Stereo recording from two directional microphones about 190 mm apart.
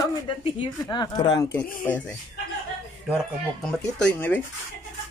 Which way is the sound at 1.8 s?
10° left (ahead or behind).